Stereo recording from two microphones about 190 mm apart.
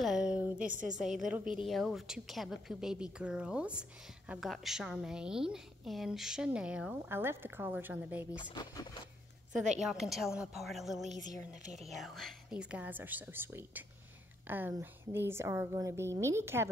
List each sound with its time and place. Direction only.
0.0 s a sound: 5° right (ahead or behind)
0.7 s a woman's voice: 40° right (ahead or behind)
1.2 s a woman's voice: 5° right (ahead or behind)
8.3 s speech: 20° left (ahead or behind)
9.8 s a woman's voice: centre (ahead or behind)